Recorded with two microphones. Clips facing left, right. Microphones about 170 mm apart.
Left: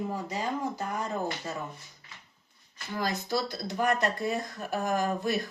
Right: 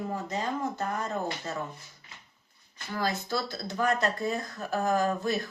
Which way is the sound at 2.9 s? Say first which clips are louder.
Even; 15° left (ahead or behind).